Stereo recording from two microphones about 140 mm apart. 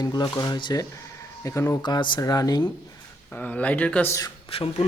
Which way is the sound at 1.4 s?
20° left (ahead or behind).